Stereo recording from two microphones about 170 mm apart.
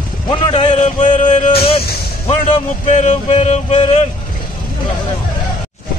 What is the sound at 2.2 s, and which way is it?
Music, 40° left (ahead or behind).